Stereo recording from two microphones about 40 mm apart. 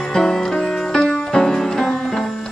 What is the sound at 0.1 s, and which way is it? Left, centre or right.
Music, centre.